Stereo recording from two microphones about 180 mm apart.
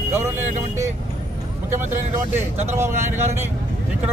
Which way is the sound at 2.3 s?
15° right (ahead or behind).